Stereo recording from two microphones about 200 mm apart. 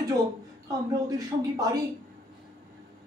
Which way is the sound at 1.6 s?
15° right (ahead or behind).